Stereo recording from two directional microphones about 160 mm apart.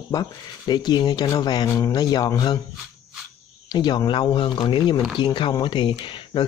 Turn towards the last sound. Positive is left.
turn(degrees=30)  # may be behind; listen again after turning